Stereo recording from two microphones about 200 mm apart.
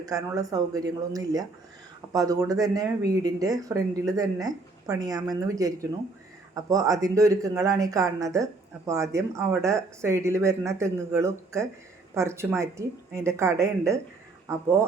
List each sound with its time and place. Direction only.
0.0 s speech: 15° right (ahead or behind)